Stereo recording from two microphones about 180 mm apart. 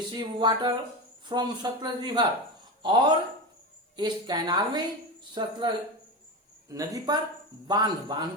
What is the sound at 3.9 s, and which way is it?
Speech, 25° right (ahead or behind).